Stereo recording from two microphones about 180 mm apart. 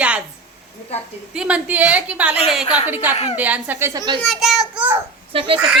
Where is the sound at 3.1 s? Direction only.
35° left (ahead or behind).